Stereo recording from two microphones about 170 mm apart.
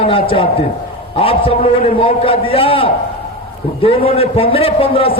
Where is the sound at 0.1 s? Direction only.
30° left (ahead or behind).